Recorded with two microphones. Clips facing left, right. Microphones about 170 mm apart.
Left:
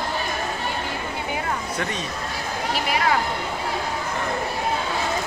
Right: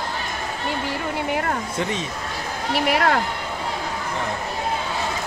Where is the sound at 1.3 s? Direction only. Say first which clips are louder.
Right 3 dB; 60° right (ahead or behind).